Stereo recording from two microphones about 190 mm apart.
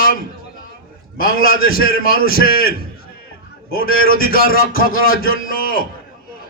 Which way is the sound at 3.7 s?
50° left (ahead or behind).